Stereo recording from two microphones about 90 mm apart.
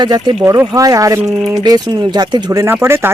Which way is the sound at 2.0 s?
55° right (ahead or behind).